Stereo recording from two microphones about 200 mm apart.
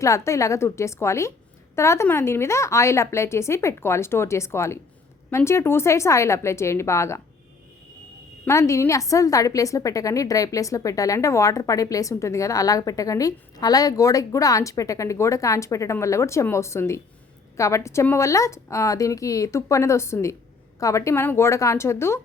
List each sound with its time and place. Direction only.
0.0 s a woman's voice: 15° left (ahead or behind)
8.4 s a woman's voice: 15° left (ahead or behind)